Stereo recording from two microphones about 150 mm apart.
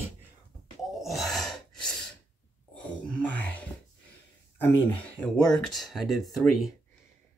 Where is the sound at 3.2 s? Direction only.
10° left (ahead or behind).